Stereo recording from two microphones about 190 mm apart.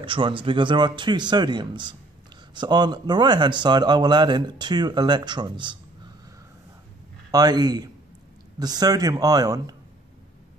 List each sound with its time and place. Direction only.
0.0 s speech: 25° right (ahead or behind)
7.2 s speech: 20° right (ahead or behind)